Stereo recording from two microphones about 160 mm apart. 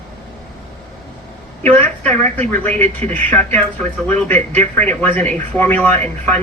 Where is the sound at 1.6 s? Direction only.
10° left (ahead or behind).